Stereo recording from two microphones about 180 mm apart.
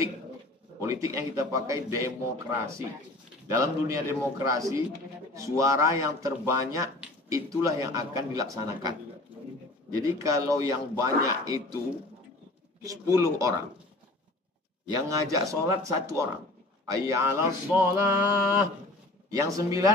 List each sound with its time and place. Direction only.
0.7 s a man's voice: 20° right (ahead or behind)
10.0 s a man's voice: 20° right (ahead or behind)
13.1 s speech: 15° right (ahead or behind)
15.0 s a man's voice: 15° right (ahead or behind)